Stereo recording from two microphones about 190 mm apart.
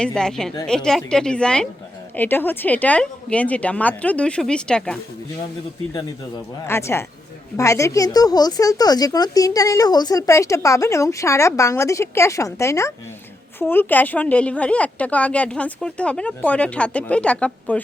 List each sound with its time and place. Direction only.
0.0 s a woman's voice: 5° left (ahead or behind)
5.9 s speech: 20° left (ahead or behind)